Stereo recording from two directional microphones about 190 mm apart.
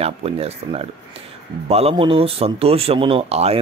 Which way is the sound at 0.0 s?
30° right (ahead or behind).